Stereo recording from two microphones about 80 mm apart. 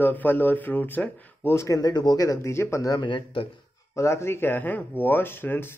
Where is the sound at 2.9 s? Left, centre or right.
Left.